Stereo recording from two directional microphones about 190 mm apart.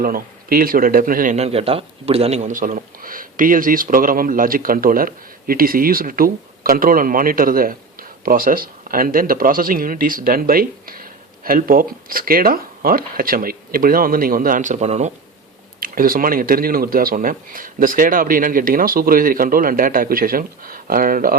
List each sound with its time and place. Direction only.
0.0 s speech: 50° right (ahead or behind)
15.8 s speech: 50° right (ahead or behind)